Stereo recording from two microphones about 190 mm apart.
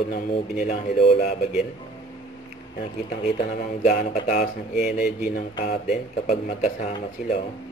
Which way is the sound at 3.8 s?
40° left (ahead or behind).